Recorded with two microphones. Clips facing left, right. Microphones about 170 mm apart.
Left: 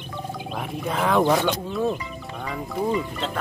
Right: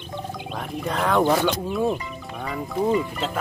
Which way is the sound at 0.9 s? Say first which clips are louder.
Even; centre (ahead or behind).